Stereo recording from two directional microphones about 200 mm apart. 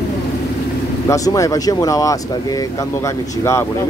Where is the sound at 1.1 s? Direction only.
15° left (ahead or behind).